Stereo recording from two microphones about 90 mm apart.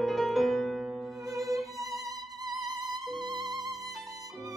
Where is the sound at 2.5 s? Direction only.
45° right (ahead or behind).